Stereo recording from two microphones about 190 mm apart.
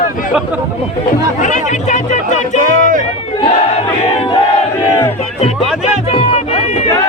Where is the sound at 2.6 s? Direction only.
45° right (ahead or behind).